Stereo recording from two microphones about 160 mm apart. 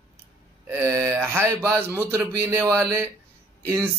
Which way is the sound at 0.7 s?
15° right (ahead or behind).